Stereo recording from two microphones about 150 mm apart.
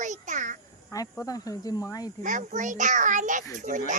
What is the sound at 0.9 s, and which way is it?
Speech, 25° left (ahead or behind).